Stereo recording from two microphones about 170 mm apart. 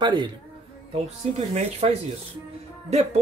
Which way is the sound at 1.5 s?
40° right (ahead or behind).